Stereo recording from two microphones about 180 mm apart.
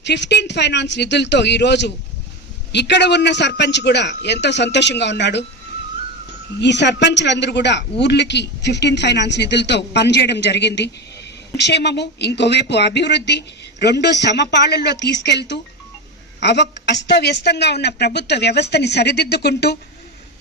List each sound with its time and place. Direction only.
0.0 s a woman's voice: 75° left (ahead or behind)
6.6 s a woman's voice: 75° left (ahead or behind)